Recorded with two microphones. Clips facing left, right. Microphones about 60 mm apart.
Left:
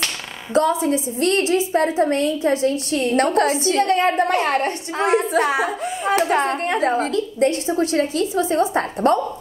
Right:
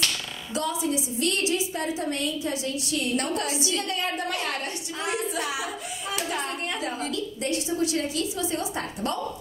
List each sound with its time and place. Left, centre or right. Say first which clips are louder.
0.6 s a woman's voice: left 10 dB; left